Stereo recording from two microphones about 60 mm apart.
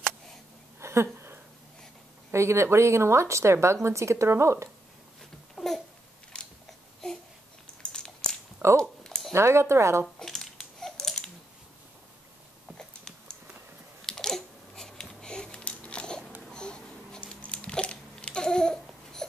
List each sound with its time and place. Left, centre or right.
0.7 s a sound: right
2.3 s a woman's voice: right
5.6 s babbling: centre
6.3 s biting: centre
8.6 s speech: right
9.3 s a woman's voice: right
10.0 s a sound: centre
12.7 s a sound: centre
16.4 s babbling: centre